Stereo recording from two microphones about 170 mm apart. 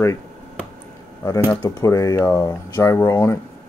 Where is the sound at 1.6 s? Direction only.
20° left (ahead or behind).